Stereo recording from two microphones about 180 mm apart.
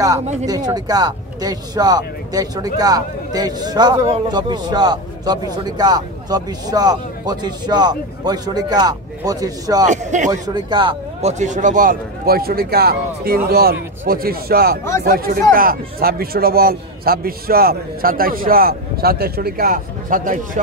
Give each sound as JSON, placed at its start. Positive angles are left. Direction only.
{"t": 0.5, "sound": "a man's voice", "side_deg": -20}
{"t": 9.8, "sound": "speech", "side_deg": -40}
{"t": 10.3, "sound": "a man's voice", "side_deg": -20}